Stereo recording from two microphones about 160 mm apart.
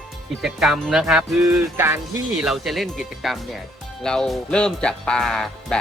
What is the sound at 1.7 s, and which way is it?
Speech, 15° right (ahead or behind).